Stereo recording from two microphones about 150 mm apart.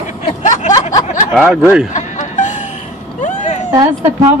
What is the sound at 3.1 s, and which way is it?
Vehicle, 55° left (ahead or behind).